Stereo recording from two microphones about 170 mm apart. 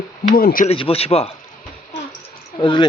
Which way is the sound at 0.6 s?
35° left (ahead or behind).